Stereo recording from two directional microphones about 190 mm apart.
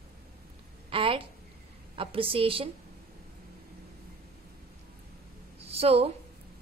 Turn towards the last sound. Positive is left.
turn(degrees=-30)  # may be behind; listen again after turning